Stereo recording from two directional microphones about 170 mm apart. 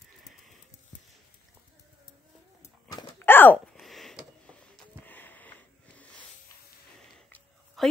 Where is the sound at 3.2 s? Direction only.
10° left (ahead or behind).